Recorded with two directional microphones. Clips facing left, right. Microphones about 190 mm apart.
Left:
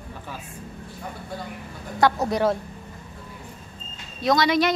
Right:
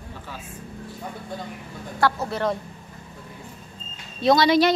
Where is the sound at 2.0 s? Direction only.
15° left (ahead or behind).